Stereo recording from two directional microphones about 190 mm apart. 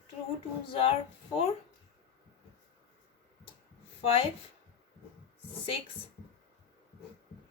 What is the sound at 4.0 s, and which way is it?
Speech, 30° left (ahead or behind).